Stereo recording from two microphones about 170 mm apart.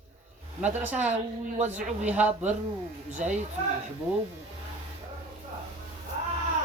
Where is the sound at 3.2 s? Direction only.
50° right (ahead or behind).